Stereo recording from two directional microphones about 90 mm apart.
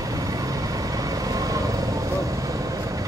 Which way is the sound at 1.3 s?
40° right (ahead or behind).